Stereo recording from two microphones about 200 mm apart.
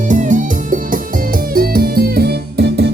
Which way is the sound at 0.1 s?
40° right (ahead or behind).